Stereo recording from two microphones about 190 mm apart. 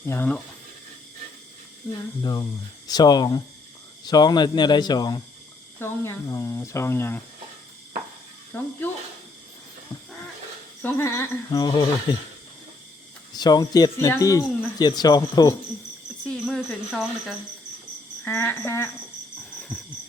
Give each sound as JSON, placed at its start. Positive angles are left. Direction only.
{"t": 0.0, "sound": "speech", "side_deg": 10}
{"t": 2.2, "sound": "speech", "side_deg": 20}
{"t": 10.8, "sound": "speech", "side_deg": 15}
{"t": 13.3, "sound": "speech", "side_deg": 20}
{"t": 16.2, "sound": "speech", "side_deg": 5}
{"t": 18.3, "sound": "speech", "side_deg": 15}
{"t": 19.5, "sound": "a sound", "side_deg": 5}